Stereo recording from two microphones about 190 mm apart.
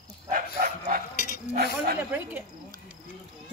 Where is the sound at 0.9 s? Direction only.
50° right (ahead or behind).